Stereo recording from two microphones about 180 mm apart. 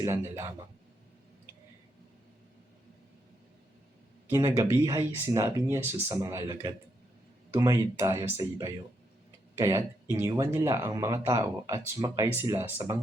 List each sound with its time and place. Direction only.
0.0 s speech: 15° right (ahead or behind)
4.3 s speech: 15° right (ahead or behind)